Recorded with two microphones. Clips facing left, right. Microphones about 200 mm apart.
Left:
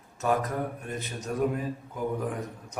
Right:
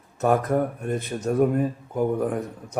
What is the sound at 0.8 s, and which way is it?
Speech, 50° right (ahead or behind).